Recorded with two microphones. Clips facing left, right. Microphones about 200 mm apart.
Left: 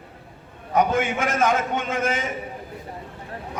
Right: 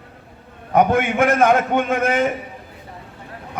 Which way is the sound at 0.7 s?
60° right (ahead or behind).